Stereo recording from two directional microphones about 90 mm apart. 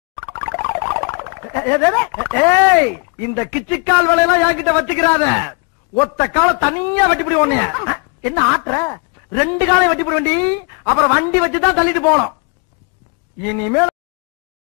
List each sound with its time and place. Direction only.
0.1 s a sound: 25° left (ahead or behind)
2.3 s a man's voice: 25° left (ahead or behind)
13.4 s a man's voice: 25° left (ahead or behind)